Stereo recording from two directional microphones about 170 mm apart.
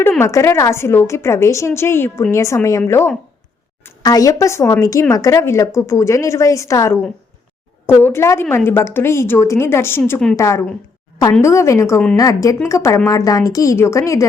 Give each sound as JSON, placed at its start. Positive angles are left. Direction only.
{"t": 0.0, "sound": "a woman's voice", "side_deg": 15}
{"t": 10.3, "sound": "a woman's voice", "side_deg": 15}